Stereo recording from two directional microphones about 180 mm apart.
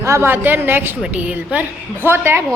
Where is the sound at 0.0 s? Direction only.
15° right (ahead or behind).